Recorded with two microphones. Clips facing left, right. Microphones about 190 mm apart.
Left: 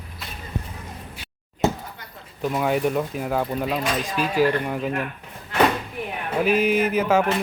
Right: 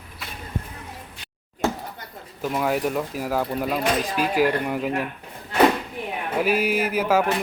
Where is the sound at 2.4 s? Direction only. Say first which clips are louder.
Left 1 dB; centre (ahead or behind).